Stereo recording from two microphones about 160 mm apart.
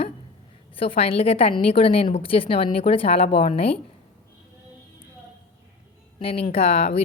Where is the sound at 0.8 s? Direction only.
35° left (ahead or behind).